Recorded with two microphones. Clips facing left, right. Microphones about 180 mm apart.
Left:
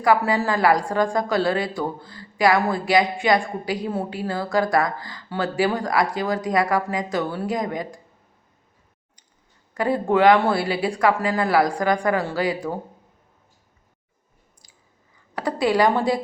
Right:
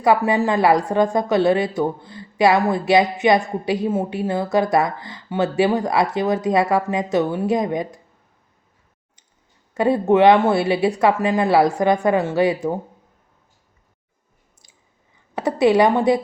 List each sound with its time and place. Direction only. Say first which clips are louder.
0.0 s a woman's voice: right 2 dB; 25° right (ahead or behind)
9.7 s a woman's voice: right 4 dB; 25° right (ahead or behind)
15.4 s a woman's voice: right 4 dB; 20° right (ahead or behind)